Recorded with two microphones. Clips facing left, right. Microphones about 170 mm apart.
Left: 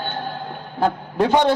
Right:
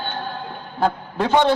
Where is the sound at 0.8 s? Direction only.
15° left (ahead or behind).